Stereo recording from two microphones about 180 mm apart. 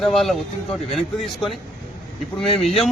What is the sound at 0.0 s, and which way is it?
A man's voice, centre (ahead or behind).